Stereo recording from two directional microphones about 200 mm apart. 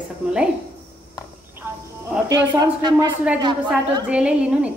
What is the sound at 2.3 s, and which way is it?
Speech, 20° right (ahead or behind).